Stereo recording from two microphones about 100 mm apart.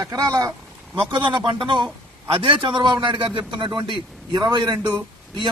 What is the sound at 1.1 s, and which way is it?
A man's voice, 50° right (ahead or behind).